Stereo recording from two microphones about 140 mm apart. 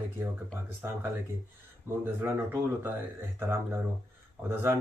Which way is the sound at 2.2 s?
15° right (ahead or behind).